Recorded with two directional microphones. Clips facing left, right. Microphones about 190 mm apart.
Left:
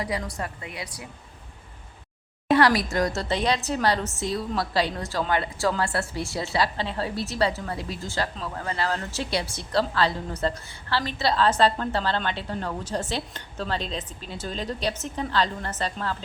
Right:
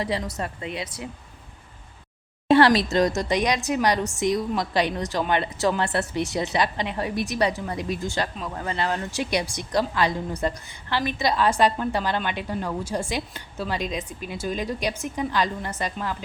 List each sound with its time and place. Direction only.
0.0 s a woman's voice: 25° right (ahead or behind)
2.5 s a woman's voice: 25° right (ahead or behind)